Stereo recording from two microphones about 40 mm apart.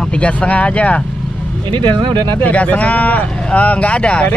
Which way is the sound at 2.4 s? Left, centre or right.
Left.